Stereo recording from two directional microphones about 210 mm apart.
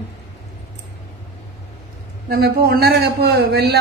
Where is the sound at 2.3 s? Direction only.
50° right (ahead or behind).